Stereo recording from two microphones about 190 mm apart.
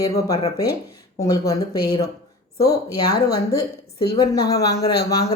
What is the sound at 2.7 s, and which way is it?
Speech, 20° left (ahead or behind).